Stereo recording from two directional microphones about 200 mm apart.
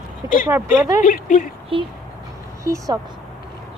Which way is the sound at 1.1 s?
40° left (ahead or behind).